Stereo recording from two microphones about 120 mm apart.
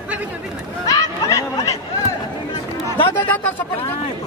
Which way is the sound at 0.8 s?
30° left (ahead or behind).